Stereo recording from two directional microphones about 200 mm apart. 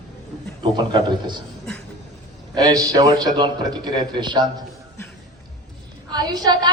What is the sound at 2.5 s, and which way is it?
A woman's voice, 20° right (ahead or behind).